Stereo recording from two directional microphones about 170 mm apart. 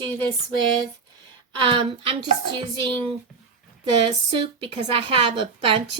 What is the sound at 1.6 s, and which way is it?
Speech, 30° right (ahead or behind).